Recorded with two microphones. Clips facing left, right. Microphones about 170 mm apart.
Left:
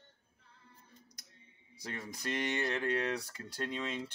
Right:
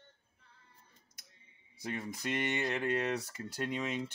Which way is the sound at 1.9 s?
15° right (ahead or behind).